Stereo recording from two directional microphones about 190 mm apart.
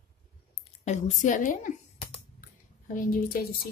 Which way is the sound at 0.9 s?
40° left (ahead or behind).